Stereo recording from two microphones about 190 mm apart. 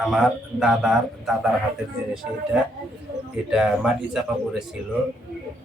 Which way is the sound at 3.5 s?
5° right (ahead or behind).